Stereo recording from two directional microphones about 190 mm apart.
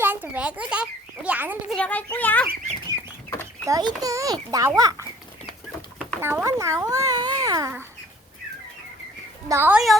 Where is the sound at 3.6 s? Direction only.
20° right (ahead or behind).